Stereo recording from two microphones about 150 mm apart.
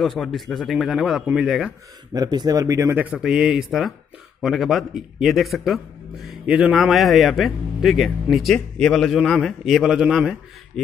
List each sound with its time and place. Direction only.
0.0 s speech: centre (ahead or behind)
2.1 s speech: 25° right (ahead or behind); by 10.3 s 5° right (ahead or behind)